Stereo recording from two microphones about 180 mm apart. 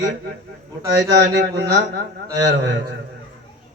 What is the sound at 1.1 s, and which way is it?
Speech, 70° right (ahead or behind).